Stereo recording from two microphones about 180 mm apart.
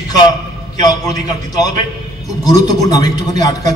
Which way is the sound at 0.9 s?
20° left (ahead or behind).